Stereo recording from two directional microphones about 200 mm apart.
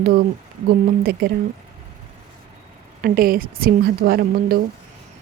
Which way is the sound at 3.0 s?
45° right (ahead or behind).